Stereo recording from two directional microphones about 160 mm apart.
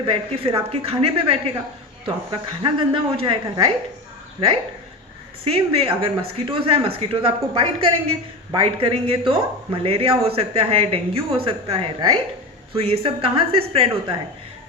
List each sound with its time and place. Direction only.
0.0 s a woman's voice: 35° right (ahead or behind)